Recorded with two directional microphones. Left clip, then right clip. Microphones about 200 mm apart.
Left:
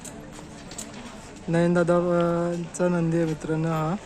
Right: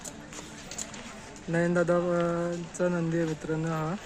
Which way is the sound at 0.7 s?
45° left (ahead or behind).